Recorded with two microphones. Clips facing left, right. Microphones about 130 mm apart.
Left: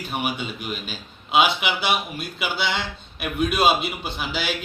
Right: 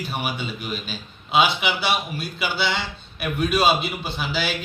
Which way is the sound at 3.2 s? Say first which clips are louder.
Even; 10° left (ahead or behind).